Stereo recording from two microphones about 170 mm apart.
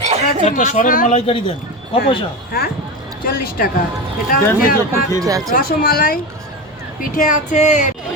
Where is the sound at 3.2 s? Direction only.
60° left (ahead or behind).